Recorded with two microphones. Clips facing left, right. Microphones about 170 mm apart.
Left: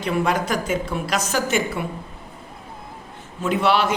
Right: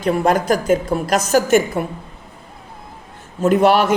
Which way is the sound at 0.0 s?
45° right (ahead or behind).